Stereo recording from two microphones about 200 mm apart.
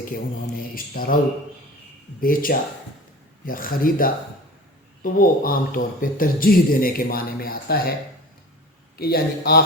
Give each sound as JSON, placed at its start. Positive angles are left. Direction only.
{"t": 0.8, "sound": "a man's voice", "side_deg": 45}
{"t": 2.2, "sound": "a man's voice", "side_deg": 45}
{"t": 9.0, "sound": "a man's voice", "side_deg": 50}